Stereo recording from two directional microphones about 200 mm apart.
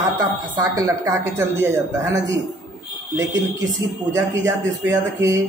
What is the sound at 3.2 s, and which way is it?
Speech, 15° right (ahead or behind).